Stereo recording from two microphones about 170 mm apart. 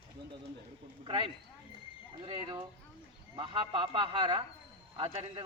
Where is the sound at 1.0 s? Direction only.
30° right (ahead or behind).